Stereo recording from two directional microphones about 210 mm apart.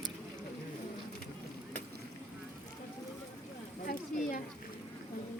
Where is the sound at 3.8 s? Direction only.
40° left (ahead or behind).